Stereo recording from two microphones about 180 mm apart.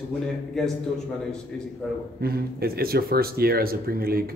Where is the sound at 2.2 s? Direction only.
60° right (ahead or behind).